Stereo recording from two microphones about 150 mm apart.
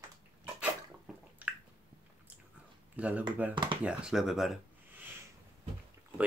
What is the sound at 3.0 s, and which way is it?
Speech, 10° right (ahead or behind).